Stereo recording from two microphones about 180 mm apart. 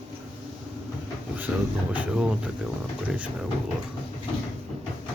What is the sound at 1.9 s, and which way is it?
Speech, 5° right (ahead or behind).